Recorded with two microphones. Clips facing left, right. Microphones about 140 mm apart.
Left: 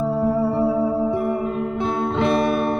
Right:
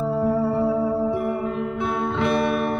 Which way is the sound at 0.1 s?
15° left (ahead or behind).